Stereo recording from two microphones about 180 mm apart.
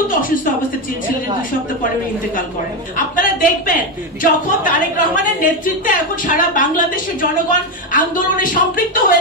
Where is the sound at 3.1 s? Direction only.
50° left (ahead or behind).